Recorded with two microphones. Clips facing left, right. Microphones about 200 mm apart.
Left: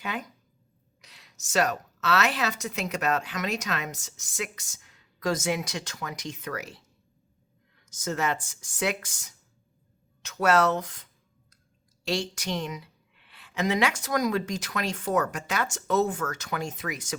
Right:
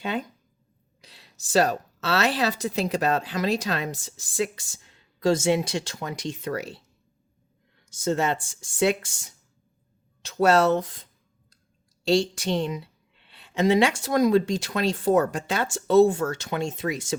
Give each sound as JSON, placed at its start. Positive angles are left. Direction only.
{"t": 0.0, "sound": "a woman's voice", "side_deg": -30}
{"t": 7.9, "sound": "a woman's voice", "side_deg": -30}